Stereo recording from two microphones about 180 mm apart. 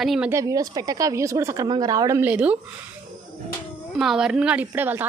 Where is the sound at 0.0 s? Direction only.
Centre (ahead or behind).